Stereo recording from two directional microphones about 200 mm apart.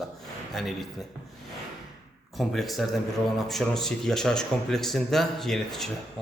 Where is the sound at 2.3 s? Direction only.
Centre (ahead or behind).